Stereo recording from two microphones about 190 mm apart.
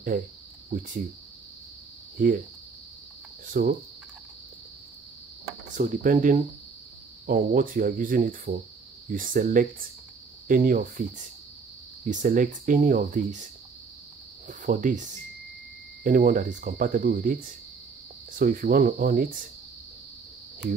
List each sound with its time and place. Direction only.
0.7 s speech: 45° right (ahead or behind)
2.2 s speech: 45° right (ahead or behind)
3.4 s speech: 45° right (ahead or behind)
5.8 s speech: 45° right (ahead or behind)
14.5 s speech: 45° right (ahead or behind)